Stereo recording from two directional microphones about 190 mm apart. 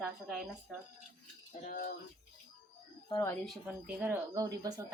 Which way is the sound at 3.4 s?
Centre (ahead or behind).